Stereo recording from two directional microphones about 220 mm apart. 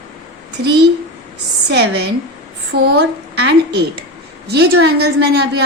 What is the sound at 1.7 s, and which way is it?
A woman's voice, 50° right (ahead or behind).